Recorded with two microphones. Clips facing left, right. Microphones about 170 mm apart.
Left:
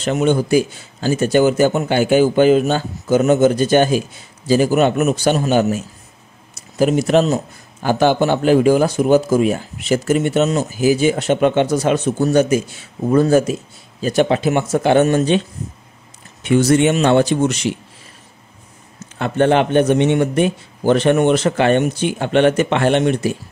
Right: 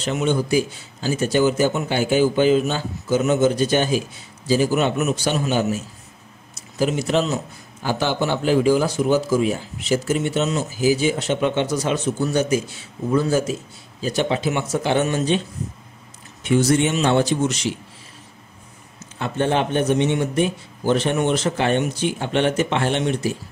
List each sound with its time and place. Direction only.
0.0 s a man's voice: 55° left (ahead or behind)
6.8 s a man's voice: 55° left (ahead or behind)
16.4 s a man's voice: 65° left (ahead or behind)
19.1 s a man's voice: 65° left (ahead or behind)